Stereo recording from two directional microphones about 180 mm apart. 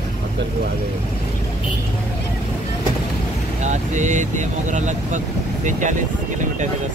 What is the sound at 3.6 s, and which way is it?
Speech, 45° right (ahead or behind).